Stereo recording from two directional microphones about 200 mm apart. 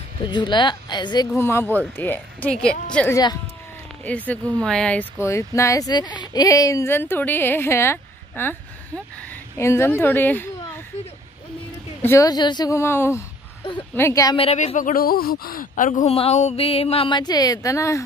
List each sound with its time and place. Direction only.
0.2 s speech: 25° left (ahead or behind)
12.0 s speech: 15° left (ahead or behind)
14.3 s speech: 30° left (ahead or behind); by 18.0 s 15° left (ahead or behind)